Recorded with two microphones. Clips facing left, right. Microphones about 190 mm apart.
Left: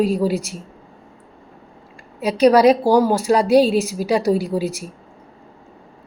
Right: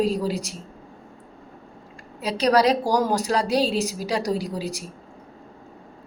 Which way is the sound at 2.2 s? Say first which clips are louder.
Left 7 dB; 10° left (ahead or behind).